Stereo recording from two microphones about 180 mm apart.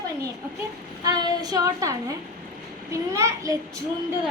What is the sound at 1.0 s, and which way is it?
A woman's voice, 20° right (ahead or behind).